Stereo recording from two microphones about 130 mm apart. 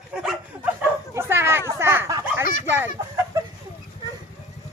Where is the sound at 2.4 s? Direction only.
90° left.